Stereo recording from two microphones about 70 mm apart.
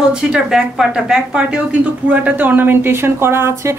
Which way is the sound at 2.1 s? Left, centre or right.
Right.